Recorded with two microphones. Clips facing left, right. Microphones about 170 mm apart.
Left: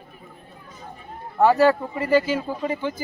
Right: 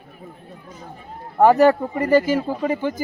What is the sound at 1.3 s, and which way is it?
Speech, 40° right (ahead or behind).